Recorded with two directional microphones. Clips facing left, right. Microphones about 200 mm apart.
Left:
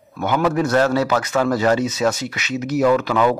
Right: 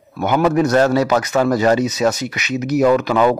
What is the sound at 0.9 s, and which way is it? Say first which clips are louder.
A man's voice: right 3 dB; 15° right (ahead or behind).